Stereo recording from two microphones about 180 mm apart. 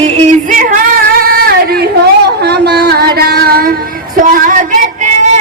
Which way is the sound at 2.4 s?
65° right (ahead or behind).